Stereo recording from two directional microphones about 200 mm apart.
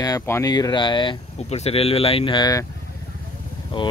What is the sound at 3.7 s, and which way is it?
Speech, 25° left (ahead or behind).